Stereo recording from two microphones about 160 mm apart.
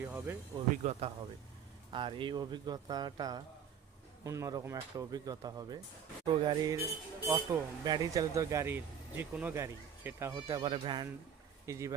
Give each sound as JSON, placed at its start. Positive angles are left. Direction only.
{"t": 0.0, "sound": "speech", "side_deg": -10}
{"t": 0.9, "sound": "speech", "side_deg": -40}
{"t": 10.6, "sound": "speech", "side_deg": -30}
{"t": 11.6, "sound": "speech", "side_deg": -20}